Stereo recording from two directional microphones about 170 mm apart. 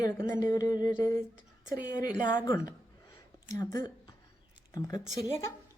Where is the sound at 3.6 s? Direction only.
20° left (ahead or behind).